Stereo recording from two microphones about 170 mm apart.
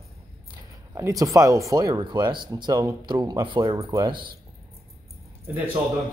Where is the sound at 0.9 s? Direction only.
20° right (ahead or behind).